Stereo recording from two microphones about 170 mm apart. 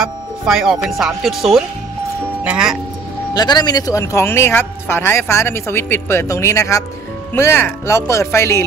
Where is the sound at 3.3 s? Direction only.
25° left (ahead or behind).